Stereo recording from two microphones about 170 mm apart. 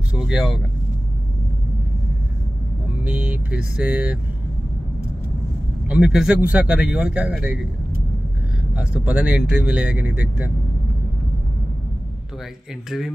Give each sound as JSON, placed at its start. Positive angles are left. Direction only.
{"t": 0.1, "sound": "speech", "side_deg": -5}
{"t": 3.0, "sound": "vehicle", "side_deg": -10}
{"t": 5.9, "sound": "speech", "side_deg": -5}
{"t": 8.7, "sound": "speech", "side_deg": -10}